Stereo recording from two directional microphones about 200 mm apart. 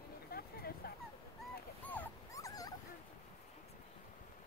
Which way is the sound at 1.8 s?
10° left (ahead or behind).